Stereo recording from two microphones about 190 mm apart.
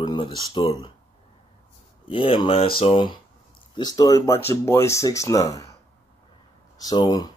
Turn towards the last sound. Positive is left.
turn(degrees=20)  # may be behind; listen again after turning